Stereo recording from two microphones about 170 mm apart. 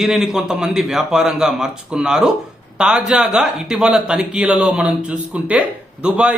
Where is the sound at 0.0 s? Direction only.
Centre (ahead or behind).